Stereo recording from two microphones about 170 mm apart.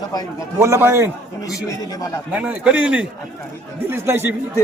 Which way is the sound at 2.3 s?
10° right (ahead or behind).